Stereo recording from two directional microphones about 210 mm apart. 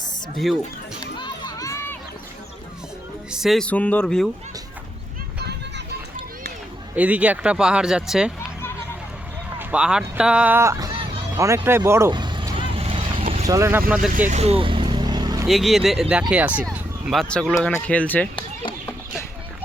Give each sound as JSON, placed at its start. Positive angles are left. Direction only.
{"t": 0.3, "sound": "speech", "side_deg": 0}
{"t": 1.2, "sound": "crowd", "side_deg": 20}
{"t": 3.2, "sound": "speech", "side_deg": 0}
{"t": 5.4, "sound": "music", "side_deg": -50}
{"t": 6.9, "sound": "speech", "side_deg": -5}
{"t": 9.6, "sound": "speech", "side_deg": -5}
{"t": 11.3, "sound": "vehicle", "side_deg": -15}
{"t": 13.5, "sound": "speech", "side_deg": -10}
{"t": 14.3, "sound": "vehicle", "side_deg": -30}
{"t": 15.4, "sound": "speech", "side_deg": 0}